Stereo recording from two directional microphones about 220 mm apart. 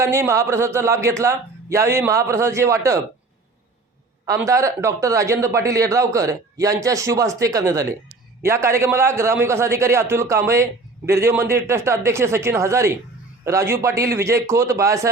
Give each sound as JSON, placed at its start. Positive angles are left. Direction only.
{"t": 0.0, "sound": "a man's voice", "side_deg": -10}
{"t": 4.3, "sound": "a man's voice", "side_deg": -15}